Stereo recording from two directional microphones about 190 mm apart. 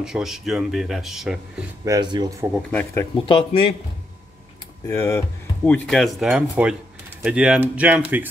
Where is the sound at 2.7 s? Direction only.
10° left (ahead or behind).